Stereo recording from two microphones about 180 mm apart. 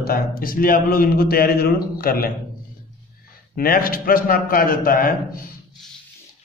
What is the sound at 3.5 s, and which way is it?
A man's voice, 55° left (ahead or behind).